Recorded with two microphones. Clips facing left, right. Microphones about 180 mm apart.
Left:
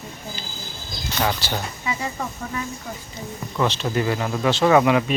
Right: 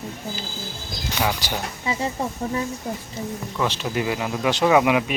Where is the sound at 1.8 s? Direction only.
30° right (ahead or behind).